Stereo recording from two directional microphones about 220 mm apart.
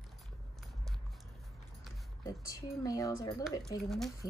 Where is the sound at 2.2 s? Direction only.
15° left (ahead or behind).